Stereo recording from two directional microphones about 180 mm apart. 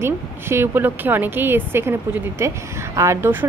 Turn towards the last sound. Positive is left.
turn(degrees=-10)  # may be behind; listen again after turning